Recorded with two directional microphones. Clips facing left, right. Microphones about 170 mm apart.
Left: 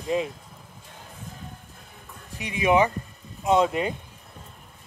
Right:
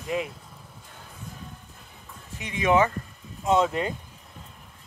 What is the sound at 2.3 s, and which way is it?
Speech, 15° left (ahead or behind).